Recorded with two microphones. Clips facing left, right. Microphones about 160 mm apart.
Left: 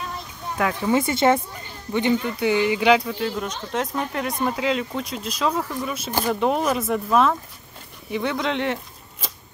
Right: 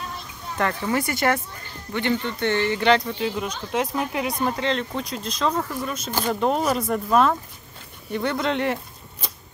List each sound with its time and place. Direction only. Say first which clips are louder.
0.8 s speech: left 6 dB; 25° left (ahead or behind); by 8.7 s centre (ahead or behind)